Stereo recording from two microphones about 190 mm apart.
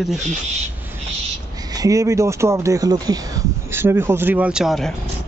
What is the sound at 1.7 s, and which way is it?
Speech, 15° right (ahead or behind).